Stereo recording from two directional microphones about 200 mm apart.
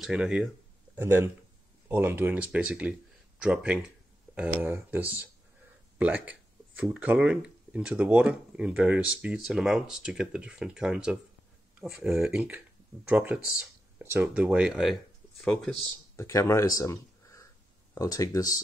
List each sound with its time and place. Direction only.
0.0 s speech: 5° right (ahead or behind)
16.2 s speech: 15° left (ahead or behind)